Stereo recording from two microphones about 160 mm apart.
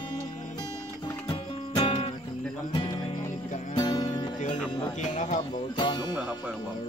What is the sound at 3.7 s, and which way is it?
Music, 25° left (ahead or behind).